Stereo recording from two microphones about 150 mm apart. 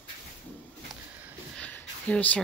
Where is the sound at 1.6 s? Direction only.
10° left (ahead or behind).